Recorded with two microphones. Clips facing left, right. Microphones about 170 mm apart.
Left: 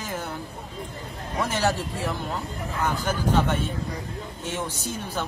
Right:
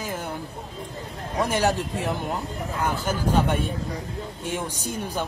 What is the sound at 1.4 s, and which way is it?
Speech, 15° right (ahead or behind).